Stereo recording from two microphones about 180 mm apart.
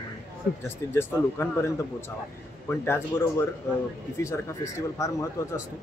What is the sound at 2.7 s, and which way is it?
Speech, 10° left (ahead or behind).